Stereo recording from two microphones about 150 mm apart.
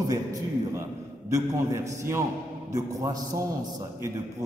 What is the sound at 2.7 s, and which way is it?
Speech, 20° right (ahead or behind).